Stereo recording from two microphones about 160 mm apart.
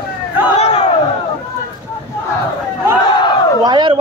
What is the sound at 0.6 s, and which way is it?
Crowd, 45° left (ahead or behind).